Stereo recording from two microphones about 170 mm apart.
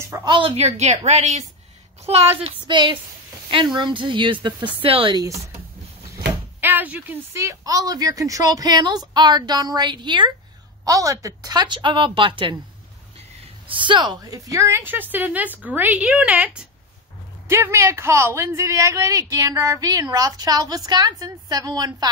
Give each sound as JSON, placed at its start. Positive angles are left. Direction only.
{"t": 0.1, "sound": "a woman's voice", "side_deg": -25}
{"t": 6.6, "sound": "speech", "side_deg": -10}
{"t": 13.7, "sound": "a woman's voice", "side_deg": -30}